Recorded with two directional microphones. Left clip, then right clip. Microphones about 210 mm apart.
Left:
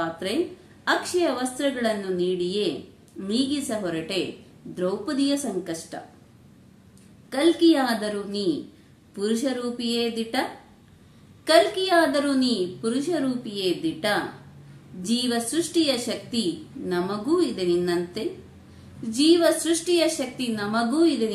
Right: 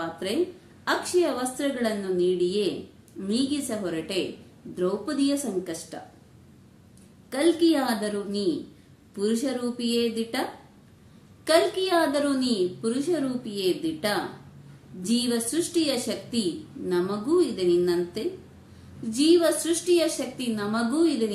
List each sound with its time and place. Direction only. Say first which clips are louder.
0.0 s a woman's voice: left 1 dB; 5° right (ahead or behind)
7.2 s a woman's voice: left 3 dB; 5° right (ahead or behind)
11.4 s a woman's voice: left 3 dB; 5° right (ahead or behind)